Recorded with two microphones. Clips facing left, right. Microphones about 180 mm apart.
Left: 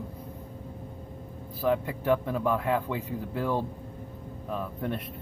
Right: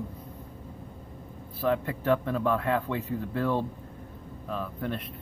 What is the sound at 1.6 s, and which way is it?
Speech, 10° left (ahead or behind).